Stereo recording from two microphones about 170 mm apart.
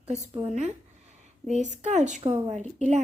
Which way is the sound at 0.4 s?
40° right (ahead or behind).